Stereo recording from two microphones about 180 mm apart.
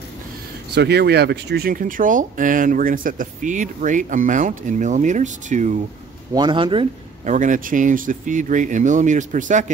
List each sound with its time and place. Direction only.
0.7 s speech: 65° right (ahead or behind); by 5.8 s 45° right (ahead or behind)
6.3 s speech: 25° right (ahead or behind)
7.2 s speech: 45° right (ahead or behind)